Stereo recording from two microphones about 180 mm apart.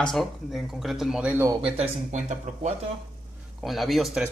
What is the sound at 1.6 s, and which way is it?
Speech, 35° right (ahead or behind).